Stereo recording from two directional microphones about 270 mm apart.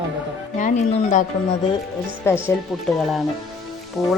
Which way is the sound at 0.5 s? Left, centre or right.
Left.